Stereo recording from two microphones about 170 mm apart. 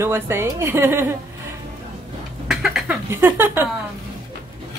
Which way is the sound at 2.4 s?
5° right (ahead or behind).